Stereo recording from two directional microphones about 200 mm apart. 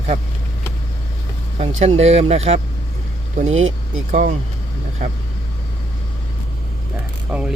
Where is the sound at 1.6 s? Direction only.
35° right (ahead or behind).